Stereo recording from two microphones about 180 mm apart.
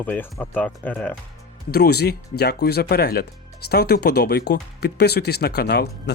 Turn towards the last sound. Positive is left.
turn(degrees=65)  # may be behind; listen again after turning